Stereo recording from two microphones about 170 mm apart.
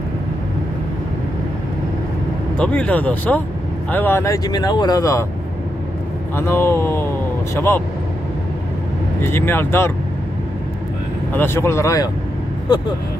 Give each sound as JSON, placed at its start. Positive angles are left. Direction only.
{"t": 2.5, "sound": "speech", "side_deg": 5}
{"t": 6.3, "sound": "speech", "side_deg": 15}
{"t": 9.2, "sound": "speech", "side_deg": 15}
{"t": 11.3, "sound": "speech", "side_deg": 15}